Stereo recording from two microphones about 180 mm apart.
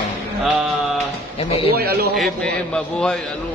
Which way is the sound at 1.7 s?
60° right (ahead or behind).